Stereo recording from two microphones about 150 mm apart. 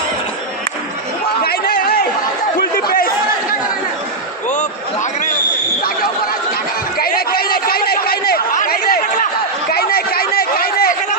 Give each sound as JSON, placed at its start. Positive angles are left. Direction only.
{"t": 1.4, "sound": "chatter", "side_deg": 85}
{"t": 7.0, "sound": "chatter", "side_deg": 90}
{"t": 9.7, "sound": "a sound", "side_deg": 90}